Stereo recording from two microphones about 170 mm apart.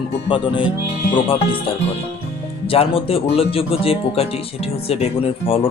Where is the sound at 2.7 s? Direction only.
35° left (ahead or behind).